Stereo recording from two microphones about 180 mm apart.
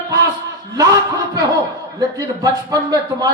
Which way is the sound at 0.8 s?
20° right (ahead or behind).